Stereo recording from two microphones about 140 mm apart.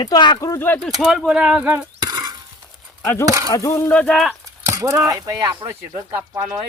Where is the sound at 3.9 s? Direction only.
5° left (ahead or behind).